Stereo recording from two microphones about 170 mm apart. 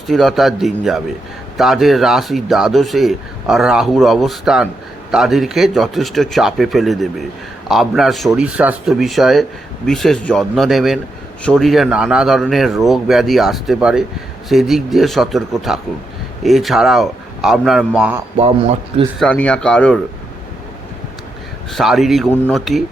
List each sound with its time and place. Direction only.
0.1 s speech: centre (ahead or behind)
18.3 s a man's voice: 40° right (ahead or behind)
19.2 s speech: 5° left (ahead or behind)
21.7 s speech: centre (ahead or behind)